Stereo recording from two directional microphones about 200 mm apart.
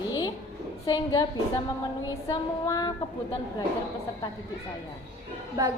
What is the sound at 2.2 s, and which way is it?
Speech, 20° left (ahead or behind).